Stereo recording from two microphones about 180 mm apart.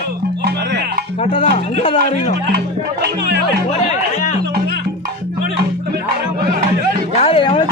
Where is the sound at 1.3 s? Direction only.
30° left (ahead or behind).